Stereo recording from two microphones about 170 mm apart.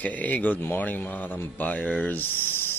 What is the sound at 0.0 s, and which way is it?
Speech, 10° left (ahead or behind).